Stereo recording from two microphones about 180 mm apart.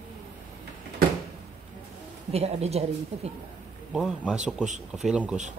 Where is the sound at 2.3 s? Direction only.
35° right (ahead or behind).